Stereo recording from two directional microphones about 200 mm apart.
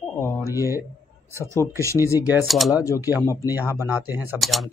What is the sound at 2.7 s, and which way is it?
Speech, 15° left (ahead or behind).